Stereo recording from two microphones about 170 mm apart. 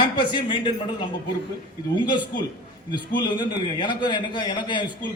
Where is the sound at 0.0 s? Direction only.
30° left (ahead or behind).